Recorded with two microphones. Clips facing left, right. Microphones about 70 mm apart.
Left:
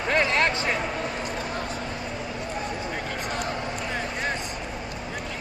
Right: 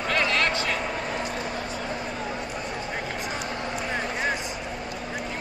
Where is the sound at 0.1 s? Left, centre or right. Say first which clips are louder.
Left 2 dB; left.